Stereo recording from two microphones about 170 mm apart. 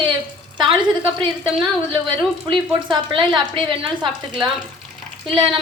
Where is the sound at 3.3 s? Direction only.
30° right (ahead or behind).